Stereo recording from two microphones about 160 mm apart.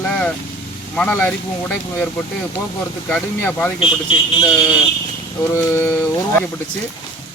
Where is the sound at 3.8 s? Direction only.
30° left (ahead or behind).